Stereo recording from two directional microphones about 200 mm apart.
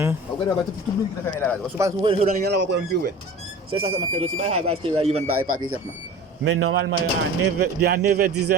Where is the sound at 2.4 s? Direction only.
55° right (ahead or behind).